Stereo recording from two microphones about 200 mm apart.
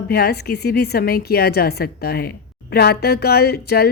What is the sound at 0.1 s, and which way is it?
Speech, 50° left (ahead or behind).